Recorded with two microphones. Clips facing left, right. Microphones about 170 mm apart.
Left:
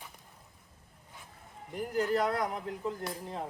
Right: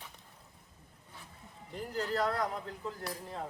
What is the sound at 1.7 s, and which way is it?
Speech, 15° left (ahead or behind).